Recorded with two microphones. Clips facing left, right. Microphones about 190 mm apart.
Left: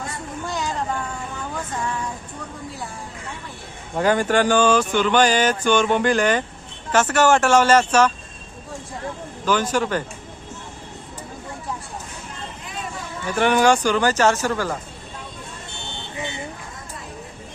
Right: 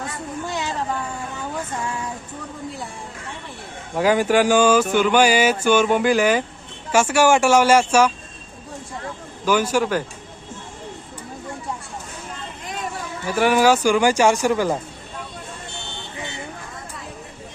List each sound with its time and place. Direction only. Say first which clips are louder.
0.4 s speech: left 1 dB; centre (ahead or behind)
3.9 s speech: right 1 dB; 5° right (ahead or behind)
9.5 s speech: right 2 dB; 10° right (ahead or behind)
13.2 s speech: right 1 dB; 5° right (ahead or behind)